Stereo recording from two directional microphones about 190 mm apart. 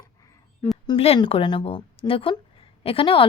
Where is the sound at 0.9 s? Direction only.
30° left (ahead or behind).